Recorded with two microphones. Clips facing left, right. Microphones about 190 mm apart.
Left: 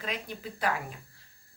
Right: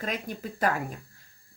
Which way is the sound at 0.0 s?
45° right (ahead or behind).